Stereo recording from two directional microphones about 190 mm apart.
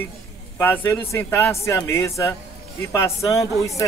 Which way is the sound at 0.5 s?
10° left (ahead or behind).